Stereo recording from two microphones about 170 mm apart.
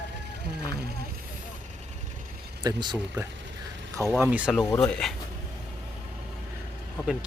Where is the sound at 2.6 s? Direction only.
25° right (ahead or behind).